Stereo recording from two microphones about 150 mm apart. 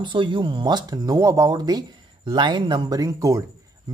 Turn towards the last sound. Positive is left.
turn(degrees=-20)  # may be behind; listen again after turning